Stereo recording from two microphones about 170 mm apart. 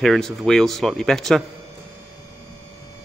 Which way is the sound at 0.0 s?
Centre (ahead or behind).